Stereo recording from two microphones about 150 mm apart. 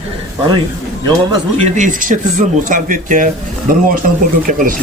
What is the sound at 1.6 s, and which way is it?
Speech, 60° right (ahead or behind).